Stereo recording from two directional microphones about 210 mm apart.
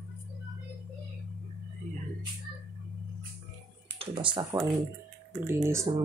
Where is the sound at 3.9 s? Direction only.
20° right (ahead or behind).